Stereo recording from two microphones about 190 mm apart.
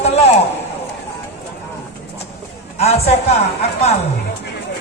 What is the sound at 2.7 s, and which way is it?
Speech, 35° left (ahead or behind).